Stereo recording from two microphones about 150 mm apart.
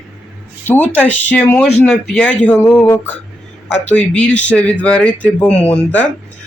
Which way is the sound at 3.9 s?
10° left (ahead or behind).